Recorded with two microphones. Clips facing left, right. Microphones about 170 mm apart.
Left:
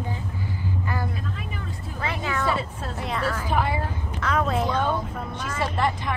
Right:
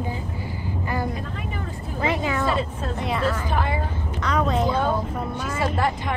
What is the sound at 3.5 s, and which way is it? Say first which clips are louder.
Vehicle: left 1 dB; 10° left (ahead or behind).